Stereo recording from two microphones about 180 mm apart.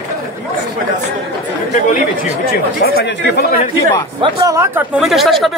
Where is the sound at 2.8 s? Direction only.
65° left (ahead or behind).